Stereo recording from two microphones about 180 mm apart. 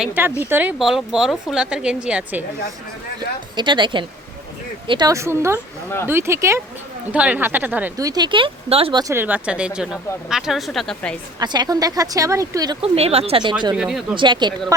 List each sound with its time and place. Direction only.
0.0 s speech: 10° right (ahead or behind)
3.2 s speech: 25° right (ahead or behind)
9.1 s speech: 10° right (ahead or behind)
11.3 s speech: 25° right (ahead or behind)
12.8 s speech: 35° right (ahead or behind)
13.7 s speech: 5° right (ahead or behind)
14.2 s speech: 25° right (ahead or behind)